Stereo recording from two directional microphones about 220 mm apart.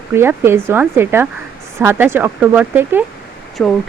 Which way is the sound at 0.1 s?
10° right (ahead or behind).